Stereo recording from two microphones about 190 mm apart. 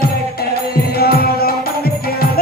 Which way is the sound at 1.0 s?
55° left (ahead or behind).